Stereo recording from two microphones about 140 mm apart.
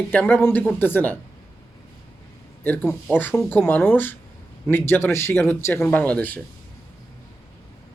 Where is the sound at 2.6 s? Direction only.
15° left (ahead or behind).